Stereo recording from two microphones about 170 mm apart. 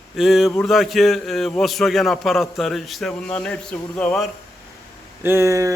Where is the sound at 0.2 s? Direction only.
Centre (ahead or behind).